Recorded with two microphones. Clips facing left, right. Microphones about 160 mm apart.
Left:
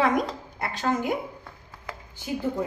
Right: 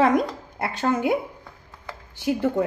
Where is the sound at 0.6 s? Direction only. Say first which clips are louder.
Right 4 dB; 60° right (ahead or behind).